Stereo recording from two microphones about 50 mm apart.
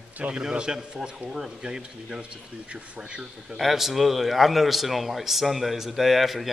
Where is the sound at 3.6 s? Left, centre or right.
Centre.